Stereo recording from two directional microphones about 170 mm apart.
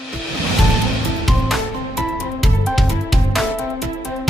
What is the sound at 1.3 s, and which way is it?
Music, centre (ahead or behind).